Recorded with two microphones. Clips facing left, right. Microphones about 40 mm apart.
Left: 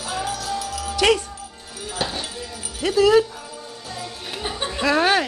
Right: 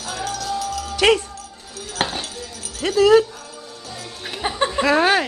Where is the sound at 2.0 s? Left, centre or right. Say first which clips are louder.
Right 3 dB; right.